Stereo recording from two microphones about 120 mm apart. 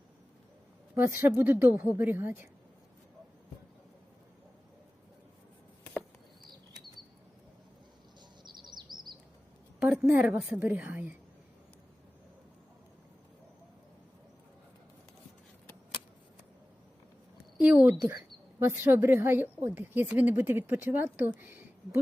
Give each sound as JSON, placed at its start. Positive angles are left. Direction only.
{"t": 0.9, "sound": "a woman's voice", "side_deg": -20}
{"t": 8.4, "sound": "bird", "side_deg": -35}
{"t": 9.8, "sound": "a woman's voice", "side_deg": -10}
{"t": 17.6, "sound": "a woman's voice", "side_deg": -10}
{"t": 18.6, "sound": "a woman's voice", "side_deg": -20}